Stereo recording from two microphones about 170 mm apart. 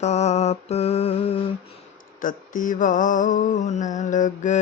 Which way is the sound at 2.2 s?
50° left (ahead or behind).